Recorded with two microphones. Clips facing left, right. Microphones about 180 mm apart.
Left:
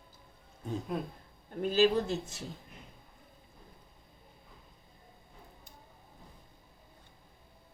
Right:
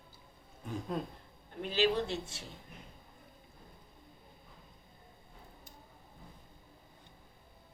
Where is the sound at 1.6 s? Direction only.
40° left (ahead or behind).